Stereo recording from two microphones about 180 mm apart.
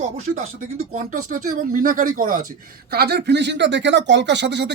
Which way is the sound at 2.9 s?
60° right (ahead or behind).